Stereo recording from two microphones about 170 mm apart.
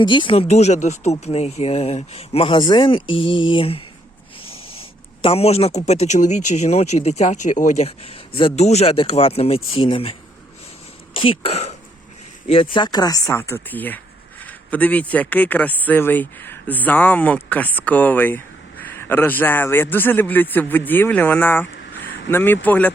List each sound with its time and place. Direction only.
0.0 s speech: 30° left (ahead or behind)
12.7 s speech: 25° left (ahead or behind)